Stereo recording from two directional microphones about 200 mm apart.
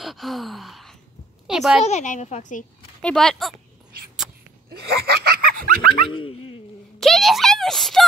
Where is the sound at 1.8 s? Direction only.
35° left (ahead or behind).